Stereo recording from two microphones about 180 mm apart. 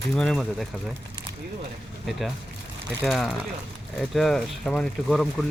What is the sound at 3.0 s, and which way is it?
Speech, centre (ahead or behind).